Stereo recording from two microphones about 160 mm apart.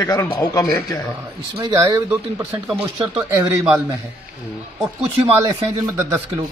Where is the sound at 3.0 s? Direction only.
20° right (ahead or behind).